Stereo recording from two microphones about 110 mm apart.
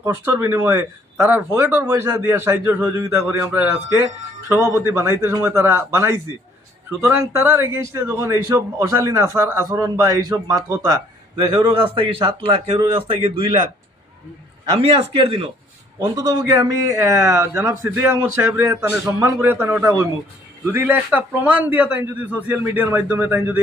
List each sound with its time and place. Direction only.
0.0 s a man's voice: 20° right (ahead or behind); by 13.1 s 45° right (ahead or behind)
14.8 s speech: 60° right (ahead or behind)
16.0 s a man's voice: 35° right (ahead or behind); by 23.4 s 15° right (ahead or behind)